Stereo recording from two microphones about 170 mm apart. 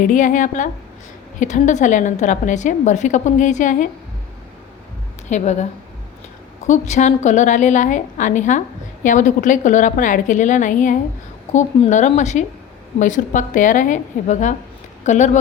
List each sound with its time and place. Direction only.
0.0 s a woman's voice: 50° left (ahead or behind)
5.3 s a woman's voice: 45° left (ahead or behind)
6.7 s a woman's voice: 45° left (ahead or behind)